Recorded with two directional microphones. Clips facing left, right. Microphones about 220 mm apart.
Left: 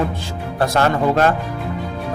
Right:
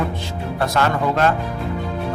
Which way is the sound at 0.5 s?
30° left (ahead or behind).